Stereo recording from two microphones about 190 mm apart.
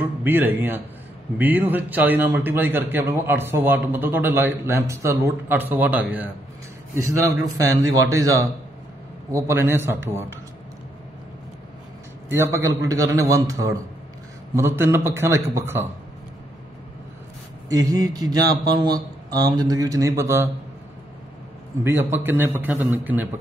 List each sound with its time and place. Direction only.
0.0 s a man's voice: 10° right (ahead or behind)
12.3 s a man's voice: 15° right (ahead or behind)
17.6 s speech: 20° right (ahead or behind)
21.8 s a man's voice: 10° right (ahead or behind)